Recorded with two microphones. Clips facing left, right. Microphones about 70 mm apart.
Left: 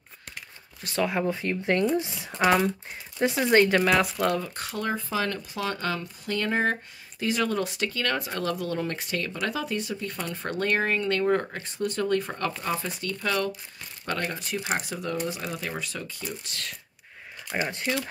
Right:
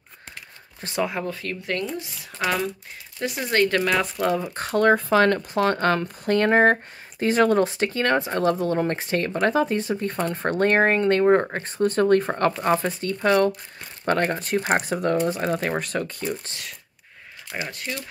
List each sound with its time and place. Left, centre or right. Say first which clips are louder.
1.3 s speech: left 3 dB; left
3.2 s speech: left 4 dB; left
3.5 s speech: even; centre
4.6 s speech: right 10 dB; right
4.8 s speech: right 11 dB; right
17.6 s speech: left 3 dB; left